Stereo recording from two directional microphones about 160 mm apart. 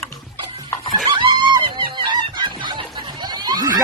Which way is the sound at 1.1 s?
30° right (ahead or behind).